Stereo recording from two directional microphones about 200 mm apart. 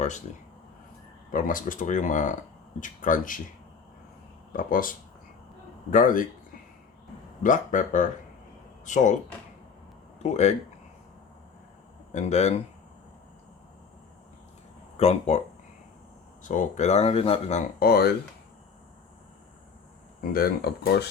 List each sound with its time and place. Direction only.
1.3 s speech: 40° left (ahead or behind)
4.5 s speech: 45° left (ahead or behind)
7.4 s speech: 40° left (ahead or behind)
10.2 s speech: 35° left (ahead or behind)
12.1 s speech: 35° left (ahead or behind)
14.9 s speech: 30° left (ahead or behind)
16.4 s speech: 40° left (ahead or behind)
17.7 s speech: 50° left (ahead or behind)
20.3 s speech: 50° left (ahead or behind)